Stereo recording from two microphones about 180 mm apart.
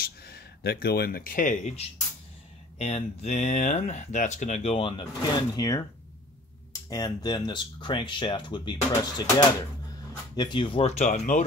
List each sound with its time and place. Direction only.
0.0 s speech: 60° left (ahead or behind); by 11.4 s 40° left (ahead or behind)